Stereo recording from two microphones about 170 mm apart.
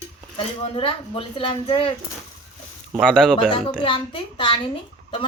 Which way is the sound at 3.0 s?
5° left (ahead or behind).